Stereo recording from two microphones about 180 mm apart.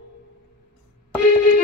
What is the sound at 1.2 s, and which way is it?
Music, 55° left (ahead or behind).